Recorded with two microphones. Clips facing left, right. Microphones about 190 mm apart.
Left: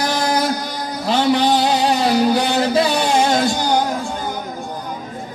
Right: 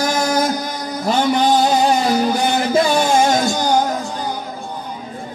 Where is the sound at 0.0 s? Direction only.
45° right (ahead or behind).